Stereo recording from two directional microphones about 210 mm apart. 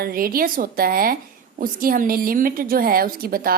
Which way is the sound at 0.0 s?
45° right (ahead or behind).